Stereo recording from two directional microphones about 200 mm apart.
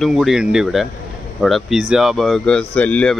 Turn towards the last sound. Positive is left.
turn(degrees=5)  # may be behind; listen again after turning